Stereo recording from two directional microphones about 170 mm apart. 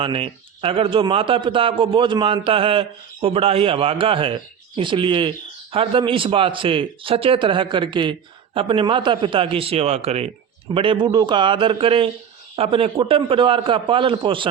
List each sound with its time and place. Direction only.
0.0 s a man's voice: 30° right (ahead or behind)